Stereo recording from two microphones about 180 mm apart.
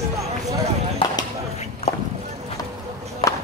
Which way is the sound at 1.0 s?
30° left (ahead or behind).